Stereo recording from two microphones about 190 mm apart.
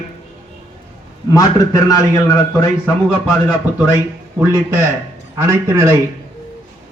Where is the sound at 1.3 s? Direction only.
15° left (ahead or behind).